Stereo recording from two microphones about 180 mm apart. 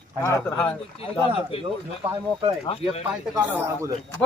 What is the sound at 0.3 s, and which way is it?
Speech, 15° left (ahead or behind).